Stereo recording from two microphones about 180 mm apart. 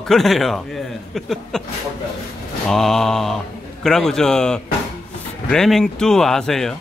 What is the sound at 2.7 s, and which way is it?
A man's voice, centre (ahead or behind).